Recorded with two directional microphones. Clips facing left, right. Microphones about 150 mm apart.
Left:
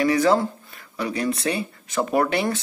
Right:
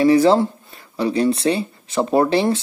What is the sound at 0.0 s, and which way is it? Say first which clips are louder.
Speech: right 5 dB; 30° right (ahead or behind).